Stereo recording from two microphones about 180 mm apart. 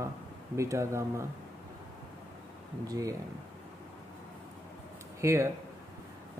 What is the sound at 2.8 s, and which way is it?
Speech, 20° right (ahead or behind).